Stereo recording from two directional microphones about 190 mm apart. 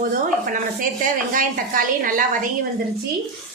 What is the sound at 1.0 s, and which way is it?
A woman's voice, 45° right (ahead or behind).